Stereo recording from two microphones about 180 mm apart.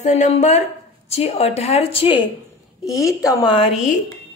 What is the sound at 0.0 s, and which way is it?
A woman's voice, 40° left (ahead or behind).